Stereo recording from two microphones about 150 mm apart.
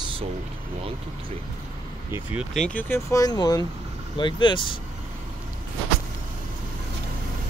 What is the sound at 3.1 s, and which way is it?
Speech, 25° left (ahead or behind).